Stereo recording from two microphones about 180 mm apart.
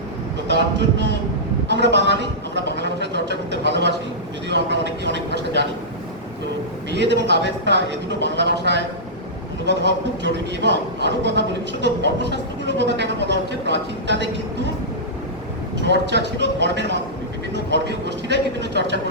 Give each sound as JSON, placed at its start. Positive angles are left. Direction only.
{"t": 0.4, "sound": "speech", "side_deg": -75}
{"t": 6.9, "sound": "speech", "side_deg": -75}
{"t": 15.9, "sound": "speech", "side_deg": -75}